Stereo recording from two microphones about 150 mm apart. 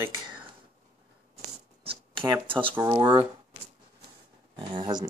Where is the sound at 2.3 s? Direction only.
35° right (ahead or behind).